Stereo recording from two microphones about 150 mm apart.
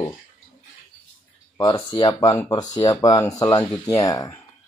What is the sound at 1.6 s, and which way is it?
Speech, 30° left (ahead or behind).